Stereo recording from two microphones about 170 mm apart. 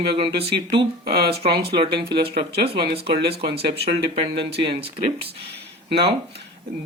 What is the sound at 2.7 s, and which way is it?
Speech, 35° right (ahead or behind).